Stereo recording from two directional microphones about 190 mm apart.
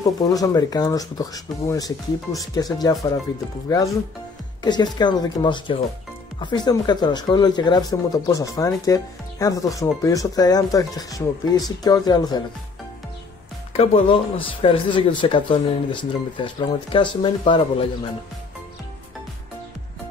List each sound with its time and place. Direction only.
0.0 s speech: 20° left (ahead or behind)
13.7 s speech: 30° left (ahead or behind)